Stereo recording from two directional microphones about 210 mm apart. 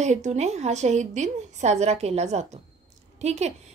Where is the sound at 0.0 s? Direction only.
35° right (ahead or behind).